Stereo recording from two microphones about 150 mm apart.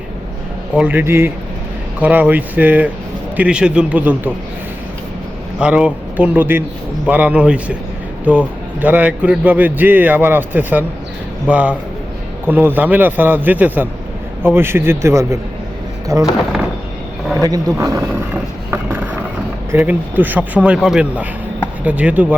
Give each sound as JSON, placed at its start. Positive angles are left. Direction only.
{"t": 0.8, "sound": "a man's voice", "side_deg": -10}
{"t": 5.5, "sound": "a man's voice", "side_deg": -5}
{"t": 17.4, "sound": "a man's voice", "side_deg": -20}